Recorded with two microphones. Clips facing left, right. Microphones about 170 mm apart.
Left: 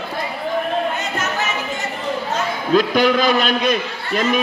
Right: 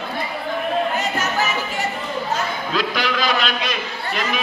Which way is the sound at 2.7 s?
50° left (ahead or behind).